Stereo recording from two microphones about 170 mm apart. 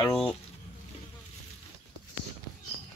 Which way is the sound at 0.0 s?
30° left (ahead or behind).